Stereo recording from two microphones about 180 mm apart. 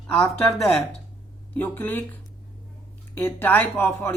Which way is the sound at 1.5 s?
10° left (ahead or behind).